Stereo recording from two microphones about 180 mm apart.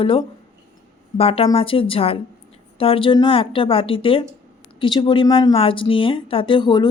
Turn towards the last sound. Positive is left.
turn(degrees=25)  # may be behind; listen again after turning